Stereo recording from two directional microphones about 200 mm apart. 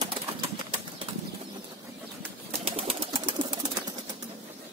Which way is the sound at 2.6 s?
30° right (ahead or behind).